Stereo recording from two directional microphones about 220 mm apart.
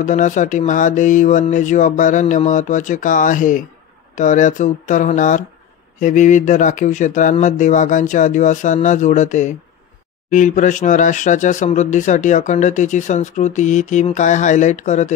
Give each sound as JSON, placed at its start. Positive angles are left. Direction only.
{"t": 0.0, "sound": "speech", "side_deg": 35}